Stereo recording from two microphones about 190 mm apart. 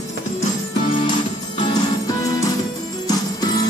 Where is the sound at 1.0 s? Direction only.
20° left (ahead or behind).